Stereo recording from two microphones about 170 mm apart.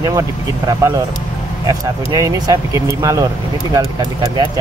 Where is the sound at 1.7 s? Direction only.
20° right (ahead or behind).